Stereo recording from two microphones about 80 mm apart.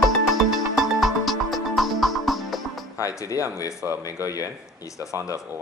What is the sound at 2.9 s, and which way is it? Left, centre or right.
Speech, left.